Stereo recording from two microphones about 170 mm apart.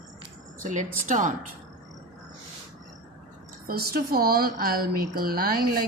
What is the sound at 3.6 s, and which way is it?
Speech, 60° right (ahead or behind).